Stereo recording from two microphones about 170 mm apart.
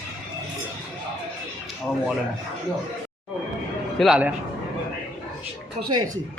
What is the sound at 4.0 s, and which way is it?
Speech, 5° right (ahead or behind).